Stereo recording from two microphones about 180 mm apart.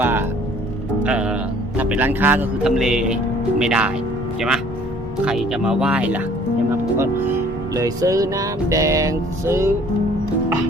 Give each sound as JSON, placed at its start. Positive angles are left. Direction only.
{"t": 0.0, "sound": "music", "side_deg": -10}
{"t": 1.0, "sound": "a man's voice", "side_deg": -5}